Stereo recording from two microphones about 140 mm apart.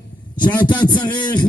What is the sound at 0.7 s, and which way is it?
Speech, 30° left (ahead or behind).